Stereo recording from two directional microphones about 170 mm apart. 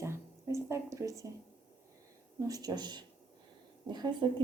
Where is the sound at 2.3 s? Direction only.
20° right (ahead or behind).